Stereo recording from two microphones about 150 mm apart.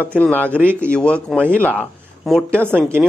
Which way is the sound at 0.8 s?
10° left (ahead or behind).